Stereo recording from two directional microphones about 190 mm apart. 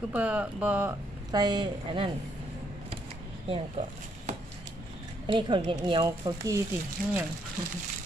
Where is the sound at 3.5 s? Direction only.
30° right (ahead or behind).